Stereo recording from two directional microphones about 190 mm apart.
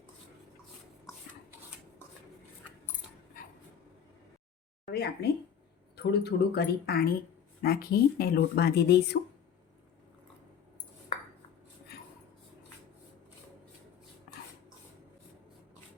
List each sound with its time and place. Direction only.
4.9 s speech: 55° left (ahead or behind)